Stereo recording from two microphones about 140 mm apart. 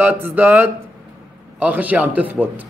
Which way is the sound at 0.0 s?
10° right (ahead or behind).